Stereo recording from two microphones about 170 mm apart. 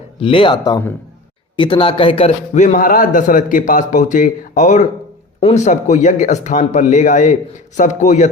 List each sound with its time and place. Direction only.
0.2 s a man's voice: 30° left (ahead or behind); by 8.3 s 45° left (ahead or behind)